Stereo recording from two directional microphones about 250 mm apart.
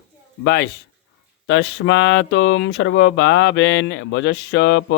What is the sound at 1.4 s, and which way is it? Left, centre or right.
Speech, left.